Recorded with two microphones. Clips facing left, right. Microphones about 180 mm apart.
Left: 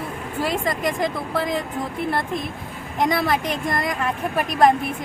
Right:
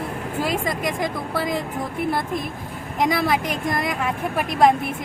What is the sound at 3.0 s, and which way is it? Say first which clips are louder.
Speech: even; centre (ahead or behind).